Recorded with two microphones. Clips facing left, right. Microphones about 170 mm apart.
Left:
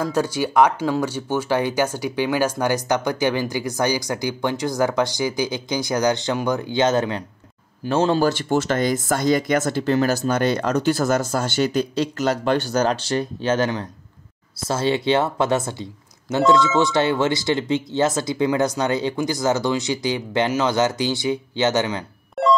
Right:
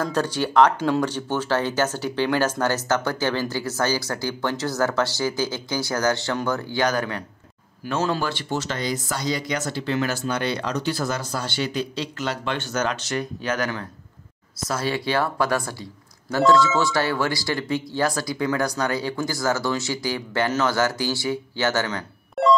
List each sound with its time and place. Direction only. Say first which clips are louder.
0.0 s speech: left 2 dB; 10° left (ahead or behind); by 8.3 s 30° left (ahead or behind)
8.3 s speech: left 7 dB; 50° left (ahead or behind); by 22.0 s 15° left (ahead or behind)
22.4 s music: even; centre (ahead or behind)